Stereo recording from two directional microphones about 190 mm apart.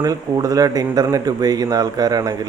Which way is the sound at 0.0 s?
20° right (ahead or behind).